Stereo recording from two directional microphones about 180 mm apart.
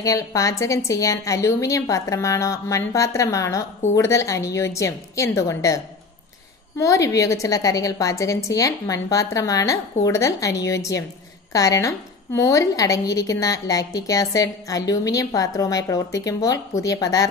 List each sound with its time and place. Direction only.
0.0 s a woman's voice: 20° left (ahead or behind)
6.8 s a woman's voice: 20° left (ahead or behind)